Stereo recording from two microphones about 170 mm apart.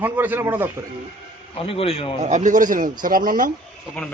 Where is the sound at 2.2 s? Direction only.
45° right (ahead or behind).